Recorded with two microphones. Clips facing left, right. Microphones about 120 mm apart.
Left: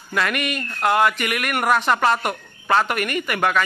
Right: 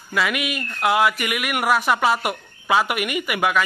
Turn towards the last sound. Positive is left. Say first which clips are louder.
# even
turn(degrees=-10)  # may be behind; listen again after turning